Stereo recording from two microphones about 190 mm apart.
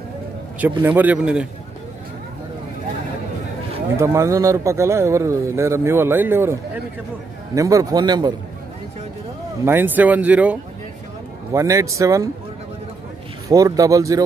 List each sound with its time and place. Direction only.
0.6 s a man's voice: 10° right (ahead or behind)
3.9 s a man's voice: 15° right (ahead or behind)
9.7 s a man's voice: 10° right (ahead or behind)
13.5 s a man's voice: 20° right (ahead or behind)